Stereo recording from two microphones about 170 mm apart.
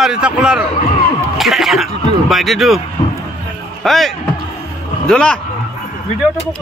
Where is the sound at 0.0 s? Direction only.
5° right (ahead or behind).